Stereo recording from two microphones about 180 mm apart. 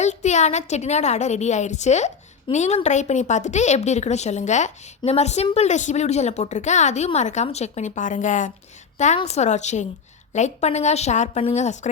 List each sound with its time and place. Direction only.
0.0 s a woman's voice: 40° left (ahead or behind)